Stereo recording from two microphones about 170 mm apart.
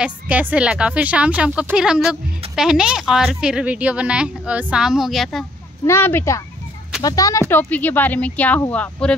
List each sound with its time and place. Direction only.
0.0 s speech: 10° right (ahead or behind)
5.9 s speech: 15° left (ahead or behind)